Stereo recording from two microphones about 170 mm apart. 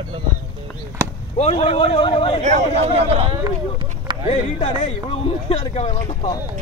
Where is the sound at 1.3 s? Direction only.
35° left (ahead or behind).